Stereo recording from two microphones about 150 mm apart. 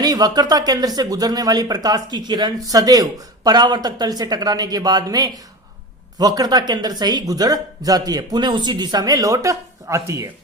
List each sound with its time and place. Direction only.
0.0 s speech: 25° right (ahead or behind)